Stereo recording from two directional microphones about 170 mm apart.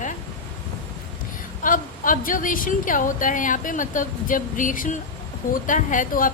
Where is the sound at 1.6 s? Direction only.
50° left (ahead or behind).